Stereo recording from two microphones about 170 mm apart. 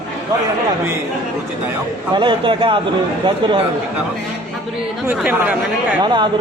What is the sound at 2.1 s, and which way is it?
Speech, 30° right (ahead or behind).